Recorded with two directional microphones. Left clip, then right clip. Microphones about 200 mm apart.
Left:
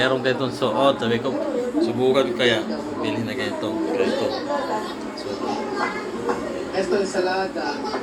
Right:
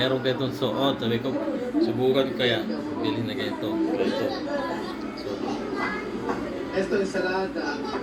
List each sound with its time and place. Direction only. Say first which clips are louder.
0.6 s a man's voice: left 7 dB; 15° left (ahead or behind)
2.0 s a man's voice: left 5 dB; 5° right (ahead or behind)